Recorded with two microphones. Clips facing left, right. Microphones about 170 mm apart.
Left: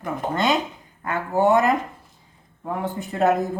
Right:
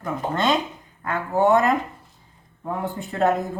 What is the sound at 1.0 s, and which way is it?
Speech, 5° left (ahead or behind).